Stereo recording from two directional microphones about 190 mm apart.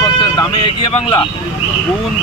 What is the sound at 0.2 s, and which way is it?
Vehicle, 25° left (ahead or behind).